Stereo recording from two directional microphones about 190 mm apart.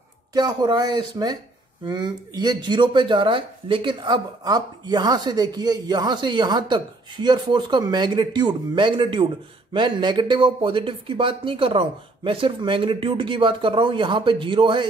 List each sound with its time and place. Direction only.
0.3 s speech: 20° right (ahead or behind)